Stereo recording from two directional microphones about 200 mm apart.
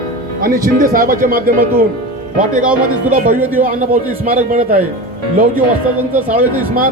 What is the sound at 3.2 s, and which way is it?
Speech, 45° right (ahead or behind).